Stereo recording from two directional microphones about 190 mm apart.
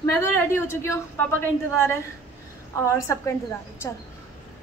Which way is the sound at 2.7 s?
15° left (ahead or behind).